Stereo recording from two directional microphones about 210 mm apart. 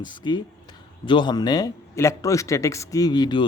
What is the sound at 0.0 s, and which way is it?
A man's voice, 20° left (ahead or behind).